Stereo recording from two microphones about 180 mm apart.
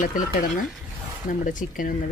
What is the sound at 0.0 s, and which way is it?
A woman's voice, 50° left (ahead or behind).